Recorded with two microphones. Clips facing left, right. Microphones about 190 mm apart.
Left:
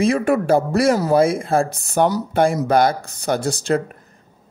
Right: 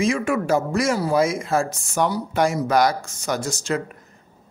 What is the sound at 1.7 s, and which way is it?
Speech, 60° left (ahead or behind).